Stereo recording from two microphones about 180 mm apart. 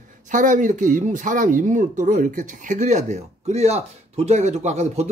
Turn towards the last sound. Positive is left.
turn(degrees=-35)  # may be behind; listen again after turning